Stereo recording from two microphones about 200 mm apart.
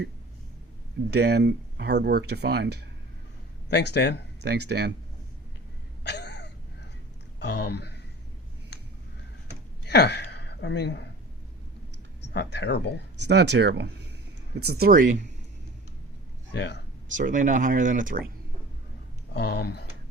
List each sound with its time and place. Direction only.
1.1 s speech: 55° right (ahead or behind)
3.7 s speech: 60° left (ahead or behind)
4.4 s speech: 55° right (ahead or behind)
6.0 s a sound: 60° left (ahead or behind)
7.3 s speech: 55° left (ahead or behind)
9.8 s a sound: 55° left (ahead or behind)
12.2 s speech: 60° left (ahead or behind)
13.2 s speech: 60° right (ahead or behind); by 15.2 s 40° right (ahead or behind)
16.6 s speech: 60° left (ahead or behind)
17.1 s speech: 40° right (ahead or behind)
19.3 s speech: 55° left (ahead or behind)